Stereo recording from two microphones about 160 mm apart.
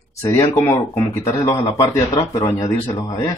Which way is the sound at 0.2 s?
20° left (ahead or behind).